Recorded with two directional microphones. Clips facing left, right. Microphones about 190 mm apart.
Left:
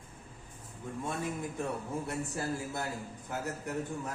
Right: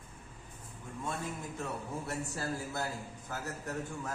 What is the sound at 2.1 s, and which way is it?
Speech, 15° left (ahead or behind).